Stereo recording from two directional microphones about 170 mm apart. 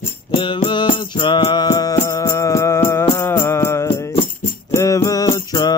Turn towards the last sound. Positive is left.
turn(degrees=20)  # may be behind; listen again after turning